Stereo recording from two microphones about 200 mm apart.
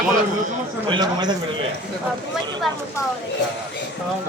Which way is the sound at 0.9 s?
20° right (ahead or behind).